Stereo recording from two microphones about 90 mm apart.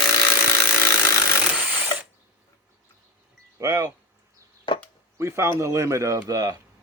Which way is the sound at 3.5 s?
35° right (ahead or behind).